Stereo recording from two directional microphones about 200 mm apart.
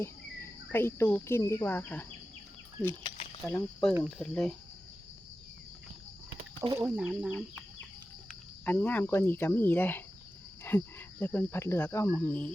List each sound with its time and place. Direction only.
0.0 s speech: 10° left (ahead or behind)
3.4 s speech: 10° left (ahead or behind)
6.6 s speech: 15° right (ahead or behind)
8.6 s speech: 10° left (ahead or behind)